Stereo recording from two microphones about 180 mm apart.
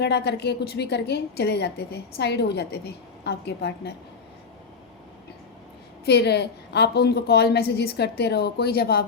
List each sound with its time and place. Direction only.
0.0 s a woman's voice: 65° left (ahead or behind)
6.1 s a woman's voice: 65° left (ahead or behind)